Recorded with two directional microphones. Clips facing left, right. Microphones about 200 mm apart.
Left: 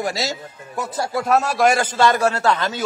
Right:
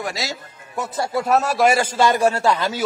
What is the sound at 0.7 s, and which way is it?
A man's voice, centre (ahead or behind).